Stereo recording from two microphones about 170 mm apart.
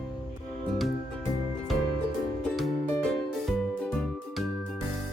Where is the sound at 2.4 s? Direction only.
Centre (ahead or behind).